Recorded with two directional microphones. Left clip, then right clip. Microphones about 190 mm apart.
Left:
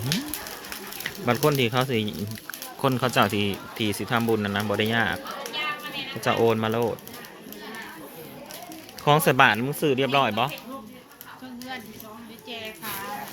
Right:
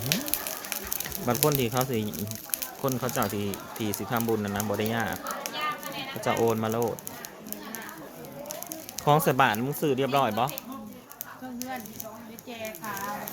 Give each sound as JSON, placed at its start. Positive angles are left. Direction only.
{"t": 1.0, "sound": "speech", "side_deg": 15}
{"t": 2.8, "sound": "speech", "side_deg": 25}
{"t": 6.2, "sound": "speech", "side_deg": 15}
{"t": 9.0, "sound": "speech", "side_deg": 15}